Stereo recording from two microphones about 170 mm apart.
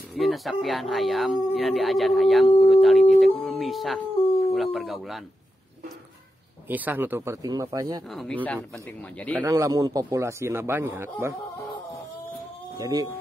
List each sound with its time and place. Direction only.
0.1 s speech: centre (ahead or behind)
6.7 s speech: 10° right (ahead or behind)
8.1 s speech: centre (ahead or behind)
9.4 s speech: 20° right (ahead or behind)
12.7 s speech: 20° right (ahead or behind)